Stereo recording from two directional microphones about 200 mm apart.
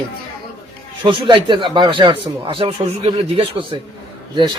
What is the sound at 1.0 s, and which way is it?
Speech, 25° right (ahead or behind).